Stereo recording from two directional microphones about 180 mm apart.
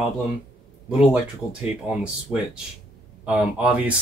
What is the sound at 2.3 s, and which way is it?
Speech, 10° right (ahead or behind).